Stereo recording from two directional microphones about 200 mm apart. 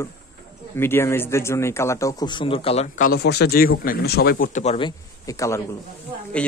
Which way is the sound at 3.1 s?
55° left (ahead or behind).